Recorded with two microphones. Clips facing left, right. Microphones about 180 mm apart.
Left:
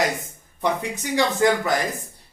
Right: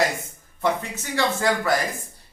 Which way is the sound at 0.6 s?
15° left (ahead or behind).